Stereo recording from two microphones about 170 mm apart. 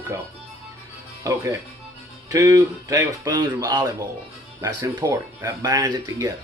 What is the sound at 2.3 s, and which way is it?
Speech, 20° right (ahead or behind).